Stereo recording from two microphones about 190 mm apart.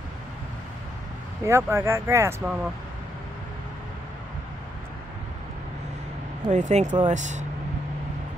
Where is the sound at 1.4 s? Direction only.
15° right (ahead or behind).